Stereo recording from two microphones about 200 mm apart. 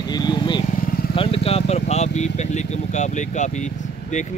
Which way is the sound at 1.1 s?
30° left (ahead or behind).